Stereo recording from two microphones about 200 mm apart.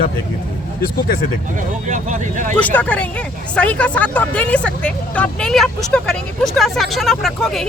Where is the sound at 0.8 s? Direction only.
45° left (ahead or behind).